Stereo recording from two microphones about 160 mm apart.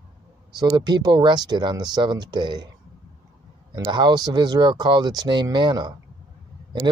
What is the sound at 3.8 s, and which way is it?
Speech, 30° right (ahead or behind).